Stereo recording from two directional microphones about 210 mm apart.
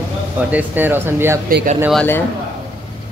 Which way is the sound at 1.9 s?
10° left (ahead or behind).